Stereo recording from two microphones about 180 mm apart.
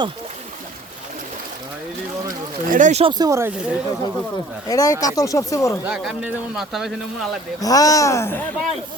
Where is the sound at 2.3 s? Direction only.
50° right (ahead or behind).